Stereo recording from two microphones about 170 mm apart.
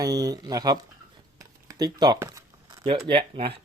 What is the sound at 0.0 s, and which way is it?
Speech, 20° right (ahead or behind).